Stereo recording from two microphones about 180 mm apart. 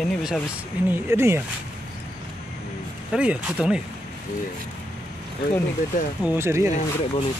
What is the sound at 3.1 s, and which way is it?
Speech, 5° right (ahead or behind).